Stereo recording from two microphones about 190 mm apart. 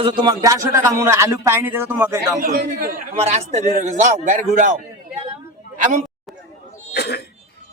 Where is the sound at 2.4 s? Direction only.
50° right (ahead or behind).